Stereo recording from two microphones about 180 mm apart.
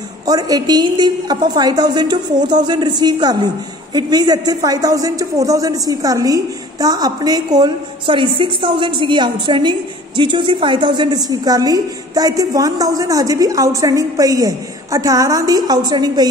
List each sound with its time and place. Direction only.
0.3 s speech: 20° right (ahead or behind)